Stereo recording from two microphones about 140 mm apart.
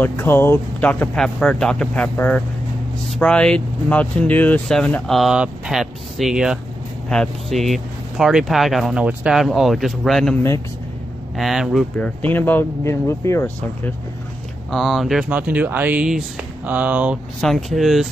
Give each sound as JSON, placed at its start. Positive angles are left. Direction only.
{"t": 0.0, "sound": "speech", "side_deg": 15}
{"t": 11.3, "sound": "speech", "side_deg": 0}
{"t": 12.0, "sound": "speech", "side_deg": 10}
{"t": 14.7, "sound": "speech", "side_deg": 0}
{"t": 15.2, "sound": "speech", "side_deg": -10}
{"t": 17.4, "sound": "speech", "side_deg": 0}